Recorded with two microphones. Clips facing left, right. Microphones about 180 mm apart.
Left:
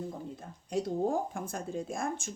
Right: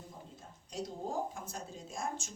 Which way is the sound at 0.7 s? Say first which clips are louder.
Left 9 dB; 55° left (ahead or behind).